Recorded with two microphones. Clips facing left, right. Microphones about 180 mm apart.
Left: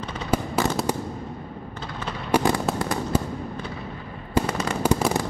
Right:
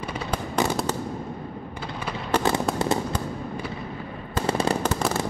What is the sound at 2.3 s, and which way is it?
Fireworks, 10° left (ahead or behind).